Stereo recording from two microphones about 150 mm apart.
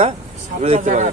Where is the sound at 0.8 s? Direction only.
55° right (ahead or behind).